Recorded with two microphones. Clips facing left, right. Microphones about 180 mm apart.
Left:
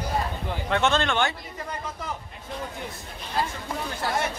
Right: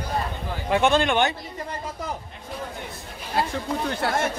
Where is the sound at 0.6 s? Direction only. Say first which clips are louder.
Right 4 dB; 10° right (ahead or behind).